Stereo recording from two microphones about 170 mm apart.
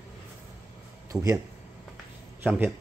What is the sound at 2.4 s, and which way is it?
Speech, 10° right (ahead or behind).